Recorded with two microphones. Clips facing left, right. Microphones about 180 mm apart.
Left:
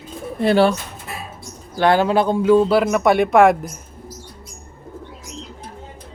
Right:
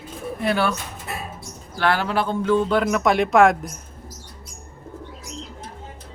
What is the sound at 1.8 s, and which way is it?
Speech, 20° left (ahead or behind).